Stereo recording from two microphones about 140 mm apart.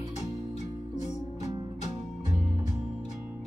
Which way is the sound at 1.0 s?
55° left (ahead or behind).